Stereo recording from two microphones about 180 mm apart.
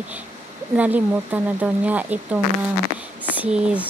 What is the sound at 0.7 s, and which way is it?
Speech, 10° right (ahead or behind).